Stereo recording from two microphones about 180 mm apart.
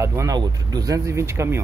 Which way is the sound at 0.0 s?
15° right (ahead or behind).